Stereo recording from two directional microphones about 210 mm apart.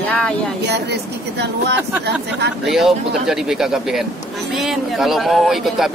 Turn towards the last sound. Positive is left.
turn(degrees=0)  # may be behind; listen again after turning